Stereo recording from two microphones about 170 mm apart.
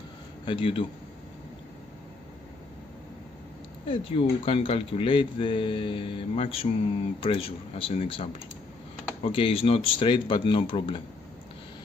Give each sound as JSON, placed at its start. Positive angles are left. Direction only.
{"t": 0.5, "sound": "speech", "side_deg": 30}
{"t": 3.9, "sound": "speech", "side_deg": 30}